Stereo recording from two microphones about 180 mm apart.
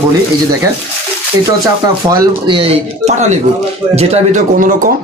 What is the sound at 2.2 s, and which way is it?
Speech, 25° right (ahead or behind).